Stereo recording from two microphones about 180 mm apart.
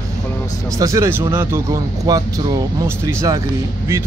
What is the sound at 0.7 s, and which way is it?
Speech, 20° right (ahead or behind).